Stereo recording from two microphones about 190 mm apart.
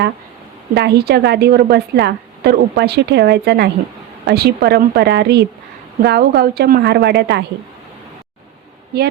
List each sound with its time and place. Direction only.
0.7 s a woman's voice: 60° right (ahead or behind)